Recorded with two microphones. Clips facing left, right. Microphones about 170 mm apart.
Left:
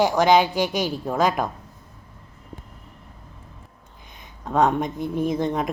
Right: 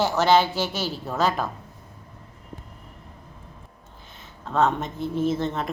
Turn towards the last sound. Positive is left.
turn(degrees=15)  # may be behind; listen again after turning